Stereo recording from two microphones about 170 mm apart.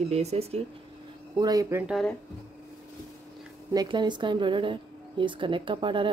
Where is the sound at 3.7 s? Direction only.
25° right (ahead or behind).